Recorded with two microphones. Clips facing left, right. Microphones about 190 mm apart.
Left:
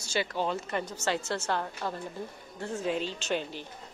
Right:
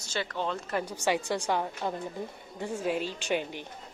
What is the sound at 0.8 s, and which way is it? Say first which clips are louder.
A woman's voice: right 3 dB; 10° right (ahead or behind).